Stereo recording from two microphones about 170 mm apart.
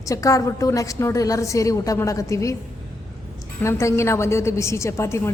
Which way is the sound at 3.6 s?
15° left (ahead or behind).